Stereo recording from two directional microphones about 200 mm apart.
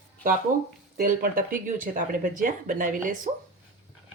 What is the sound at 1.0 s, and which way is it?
Speech, 45° right (ahead or behind).